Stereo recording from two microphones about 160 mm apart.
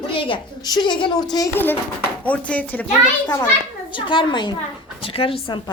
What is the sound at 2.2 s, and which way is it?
Speech, 10° left (ahead or behind).